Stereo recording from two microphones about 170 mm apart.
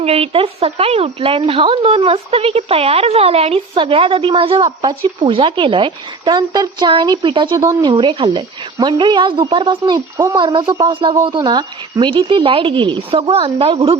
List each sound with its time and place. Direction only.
0.0 s speech: 35° right (ahead or behind)